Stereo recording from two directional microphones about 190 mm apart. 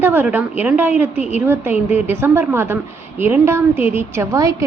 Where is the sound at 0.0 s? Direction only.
10° right (ahead or behind).